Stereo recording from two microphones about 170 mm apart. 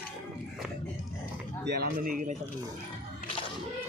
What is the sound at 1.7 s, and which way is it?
Speech, 70° right (ahead or behind).